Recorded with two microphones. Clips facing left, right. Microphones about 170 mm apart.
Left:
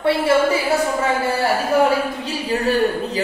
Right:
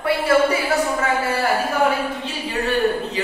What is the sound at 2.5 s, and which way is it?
Speech, 40° left (ahead or behind).